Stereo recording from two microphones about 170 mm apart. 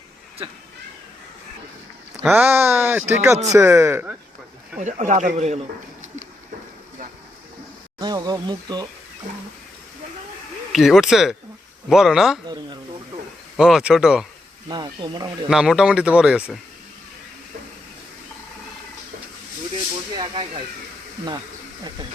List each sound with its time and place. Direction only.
2.3 s speech: 10° right (ahead or behind)
4.8 s a man's voice: 45° right (ahead or behind)
7.9 s speech: 25° right (ahead or behind)
10.7 s speech: centre (ahead or behind)
13.6 s speech: 5° right (ahead or behind)
14.7 s speech: 25° right (ahead or behind)
15.4 s speech: 5° right (ahead or behind)
20.1 s speech: 30° right (ahead or behind)